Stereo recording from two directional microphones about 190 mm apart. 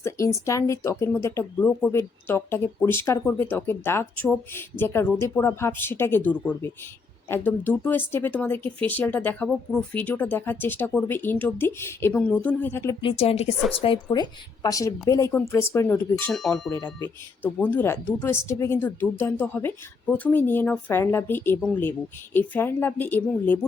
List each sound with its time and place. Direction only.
0.0 s speech: 15° left (ahead or behind)
13.0 s a woman's voice: 30° left (ahead or behind); by 16.6 s centre (ahead or behind)
16.6 s speech: 20° left (ahead or behind)